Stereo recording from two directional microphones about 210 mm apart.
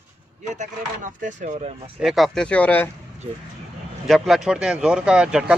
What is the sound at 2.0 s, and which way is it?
Speech, centre (ahead or behind).